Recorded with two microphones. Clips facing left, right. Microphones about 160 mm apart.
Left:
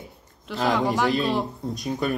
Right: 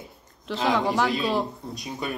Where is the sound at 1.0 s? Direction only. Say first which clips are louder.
Left 2 dB; 40° left (ahead or behind).